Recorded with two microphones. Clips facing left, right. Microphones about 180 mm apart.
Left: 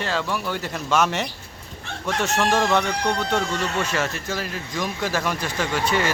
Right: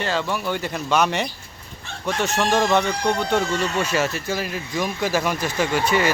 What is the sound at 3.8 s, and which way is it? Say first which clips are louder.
Speech: right 3 dB; 10° right (ahead or behind).